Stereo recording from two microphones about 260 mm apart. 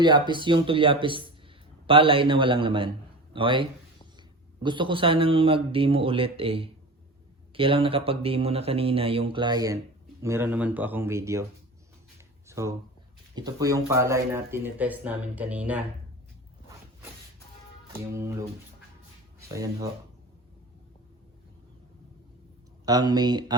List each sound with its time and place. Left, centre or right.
0.0 s speech: centre
12.5 s a sound: centre
13.3 s speech: centre
18.1 s speech: centre
22.9 s speech: centre